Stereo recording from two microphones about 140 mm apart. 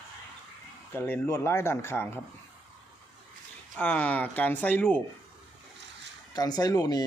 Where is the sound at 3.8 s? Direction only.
10° left (ahead or behind).